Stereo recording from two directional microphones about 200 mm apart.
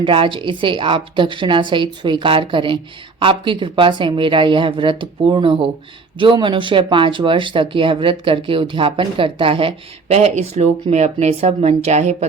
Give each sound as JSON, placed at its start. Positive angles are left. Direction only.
{"t": 0.0, "sound": "speech", "side_deg": -25}